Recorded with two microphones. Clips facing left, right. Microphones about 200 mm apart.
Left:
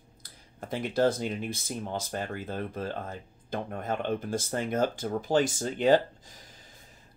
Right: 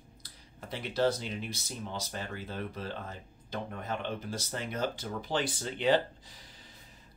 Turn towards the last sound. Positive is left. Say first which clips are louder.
# left 2 dB
turn(degrees=45)  # may be behind; listen again after turning